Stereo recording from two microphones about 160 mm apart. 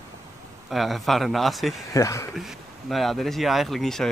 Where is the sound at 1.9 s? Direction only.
20° left (ahead or behind).